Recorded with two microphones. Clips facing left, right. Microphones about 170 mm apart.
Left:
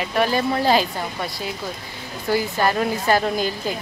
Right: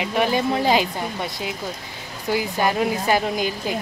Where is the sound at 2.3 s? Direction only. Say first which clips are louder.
Left 1 dB; 15° right (ahead or behind).